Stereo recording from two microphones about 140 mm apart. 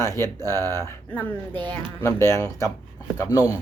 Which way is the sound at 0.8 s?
15° left (ahead or behind).